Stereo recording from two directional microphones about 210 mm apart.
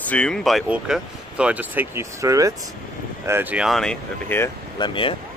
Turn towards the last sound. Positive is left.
turn(degrees=25)  # may be behind; listen again after turning